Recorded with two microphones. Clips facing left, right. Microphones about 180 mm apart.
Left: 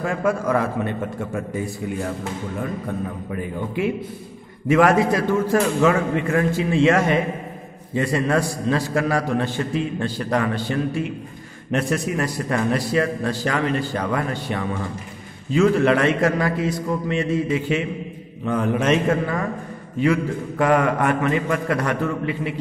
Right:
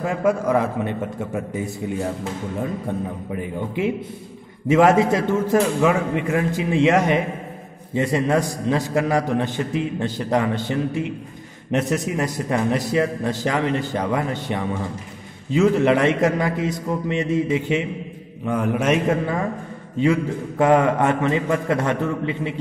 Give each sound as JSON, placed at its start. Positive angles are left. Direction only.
{"t": 0.0, "sound": "a man's voice", "side_deg": -20}
{"t": 18.4, "sound": "a man's voice", "side_deg": -10}